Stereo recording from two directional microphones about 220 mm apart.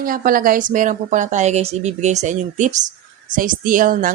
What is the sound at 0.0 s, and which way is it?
Speech, 40° right (ahead or behind).